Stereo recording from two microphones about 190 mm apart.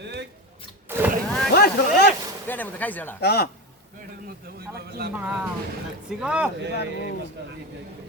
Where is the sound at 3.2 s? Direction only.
55° left (ahead or behind).